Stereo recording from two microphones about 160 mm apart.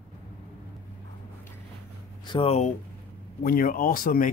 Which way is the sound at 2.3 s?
35° left (ahead or behind).